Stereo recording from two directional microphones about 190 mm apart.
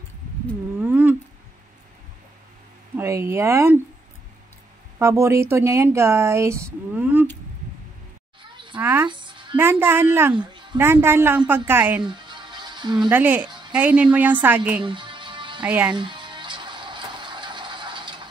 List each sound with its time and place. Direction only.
0.7 s a sound: 10° right (ahead or behind)
3.0 s speech: 15° right (ahead or behind)
4.9 s speech: 15° right (ahead or behind)
8.4 s a sound: 25° right (ahead or behind)
8.7 s a woman's voice: 10° right (ahead or behind)
9.0 s a sound: 25° right (ahead or behind)
9.6 s speech: 10° right (ahead or behind)
10.3 s a sound: 25° right (ahead or behind)
10.8 s speech: 10° right (ahead or behind)
12.0 s music: 25° right (ahead or behind)
13.1 s speech: 10° right (ahead or behind)
14.9 s music: 25° right (ahead or behind)
15.6 s speech: 5° right (ahead or behind)
16.0 s music: 25° right (ahead or behind)